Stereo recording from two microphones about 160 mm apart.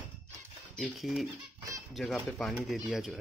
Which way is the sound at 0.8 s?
Centre (ahead or behind).